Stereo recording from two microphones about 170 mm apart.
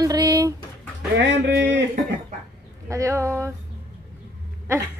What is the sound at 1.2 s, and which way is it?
Speech, 90° right.